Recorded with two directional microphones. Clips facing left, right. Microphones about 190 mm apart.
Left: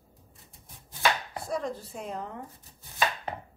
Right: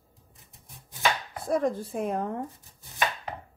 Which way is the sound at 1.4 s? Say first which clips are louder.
Right 7 dB; 55° right (ahead or behind).